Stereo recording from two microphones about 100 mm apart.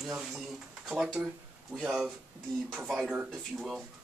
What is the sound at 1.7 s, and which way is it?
Speech, centre (ahead or behind).